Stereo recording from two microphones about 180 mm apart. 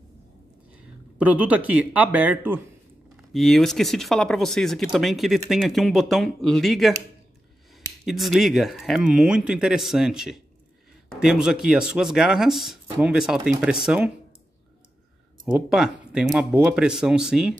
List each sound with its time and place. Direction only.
1.1 s speech: 10° right (ahead or behind)
3.3 s speech: centre (ahead or behind)
8.0 s speech: centre (ahead or behind)
15.5 s speech: 5° right (ahead or behind)